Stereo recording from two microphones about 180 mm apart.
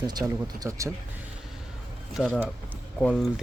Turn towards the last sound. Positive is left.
turn(degrees=5)  # may be behind; listen again after turning